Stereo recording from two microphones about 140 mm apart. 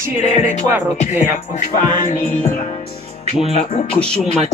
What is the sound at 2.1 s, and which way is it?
Music, 60° left (ahead or behind).